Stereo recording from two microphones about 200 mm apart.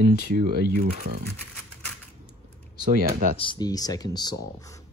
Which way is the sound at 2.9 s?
45° right (ahead or behind).